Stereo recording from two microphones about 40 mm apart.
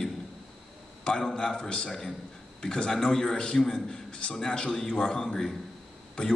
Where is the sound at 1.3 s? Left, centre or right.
Centre.